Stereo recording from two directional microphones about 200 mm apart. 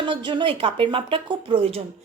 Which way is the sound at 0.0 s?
25° right (ahead or behind).